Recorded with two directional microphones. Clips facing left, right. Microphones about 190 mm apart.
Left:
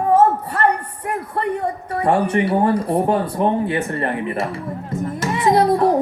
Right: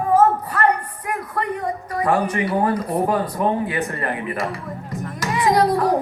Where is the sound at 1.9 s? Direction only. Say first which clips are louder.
Left 3 dB; 30° left (ahead or behind).